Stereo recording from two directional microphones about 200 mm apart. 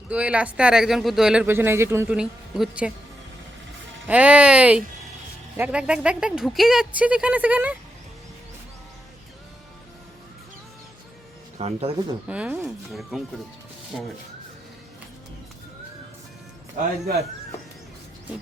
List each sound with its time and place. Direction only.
0.1 s speech: 5° right (ahead or behind)
4.0 s speech: 5° right (ahead or behind)
11.5 s speech: 30° right (ahead or behind)
12.3 s speech: 5° right (ahead or behind)